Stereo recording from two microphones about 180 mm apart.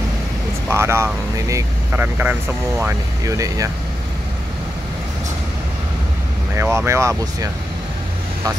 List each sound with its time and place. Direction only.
0.7 s speech: 15° right (ahead or behind)
6.5 s speech: 15° right (ahead or behind)